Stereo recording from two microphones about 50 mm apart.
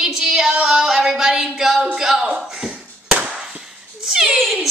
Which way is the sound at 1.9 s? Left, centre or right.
Centre.